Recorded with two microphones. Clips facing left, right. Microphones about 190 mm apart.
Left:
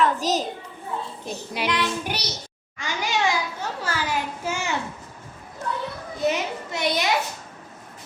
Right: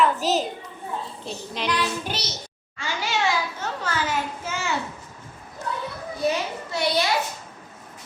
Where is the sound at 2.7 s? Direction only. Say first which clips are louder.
Left 1 dB; 15° left (ahead or behind).